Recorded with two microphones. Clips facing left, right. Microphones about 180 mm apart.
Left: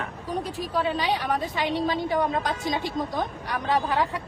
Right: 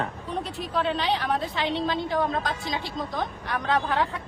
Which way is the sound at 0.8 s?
15° left (ahead or behind).